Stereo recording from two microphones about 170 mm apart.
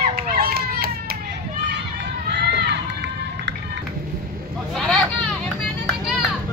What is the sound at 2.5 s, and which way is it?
Run, 90° right.